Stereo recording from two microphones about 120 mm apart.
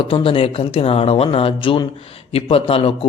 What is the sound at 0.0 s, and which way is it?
Speech, 45° left (ahead or behind).